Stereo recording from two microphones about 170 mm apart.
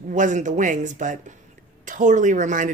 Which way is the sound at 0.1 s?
45° right (ahead or behind).